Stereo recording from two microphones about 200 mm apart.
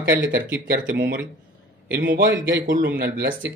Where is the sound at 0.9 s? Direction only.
60° right (ahead or behind).